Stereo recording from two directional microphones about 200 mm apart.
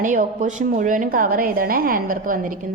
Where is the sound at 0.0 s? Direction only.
40° right (ahead or behind).